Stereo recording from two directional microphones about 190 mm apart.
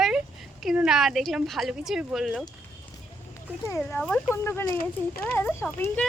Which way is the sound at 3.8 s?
Centre (ahead or behind).